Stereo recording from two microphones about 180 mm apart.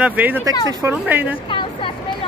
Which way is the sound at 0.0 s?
10° right (ahead or behind).